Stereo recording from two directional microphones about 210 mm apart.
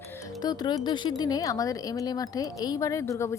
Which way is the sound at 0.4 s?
20° left (ahead or behind).